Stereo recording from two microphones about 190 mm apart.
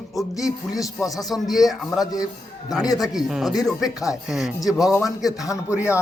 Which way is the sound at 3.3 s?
5° right (ahead or behind).